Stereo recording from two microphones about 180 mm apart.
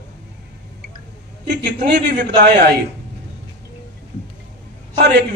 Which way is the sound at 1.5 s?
70° right (ahead or behind).